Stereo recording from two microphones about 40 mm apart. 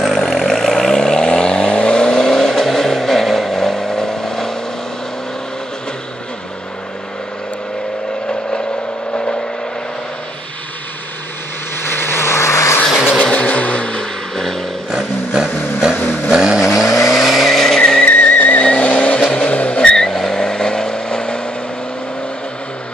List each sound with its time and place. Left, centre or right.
0.0 s vehicle: centre
8.3 s vehicle: centre
9.1 s vehicle: left
11.9 s vehicle: left
13.5 s vehicle: left
14.3 s vehicle: centre
15.3 s vehicle: centre
18.3 s vehicle: left
18.6 s vehicle: left
20.0 s vehicle: centre